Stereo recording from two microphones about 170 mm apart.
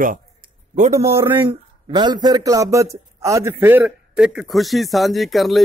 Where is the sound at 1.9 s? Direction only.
25° right (ahead or behind).